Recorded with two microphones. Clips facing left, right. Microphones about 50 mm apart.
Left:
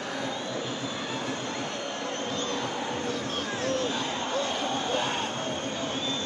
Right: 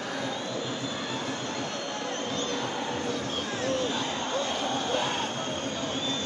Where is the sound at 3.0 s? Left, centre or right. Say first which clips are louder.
Even; centre.